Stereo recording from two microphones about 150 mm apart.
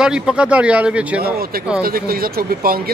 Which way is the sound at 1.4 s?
80° right.